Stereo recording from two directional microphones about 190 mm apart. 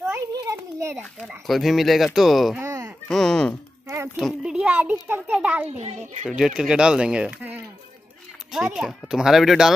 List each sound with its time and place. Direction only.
0.1 s a sound: 20° right (ahead or behind)
1.2 s speech: centre (ahead or behind)
2.6 s a sound: 15° right (ahead or behind)
3.1 s a child's voice: centre (ahead or behind)
5.8 s a child's voice: 35° right (ahead or behind)
6.2 s speech: 5° right (ahead or behind)